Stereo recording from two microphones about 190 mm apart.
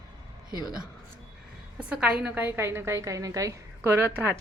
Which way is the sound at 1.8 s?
5° right (ahead or behind).